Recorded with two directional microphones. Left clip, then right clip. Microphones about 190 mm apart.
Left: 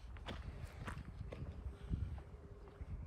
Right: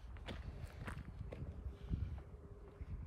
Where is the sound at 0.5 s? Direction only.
20° left (ahead or behind).